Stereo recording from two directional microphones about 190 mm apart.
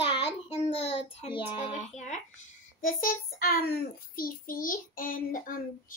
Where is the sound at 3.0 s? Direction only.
50° left (ahead or behind).